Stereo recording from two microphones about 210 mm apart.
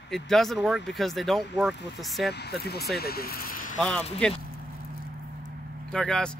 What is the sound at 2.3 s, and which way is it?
Speech, 50° left (ahead or behind).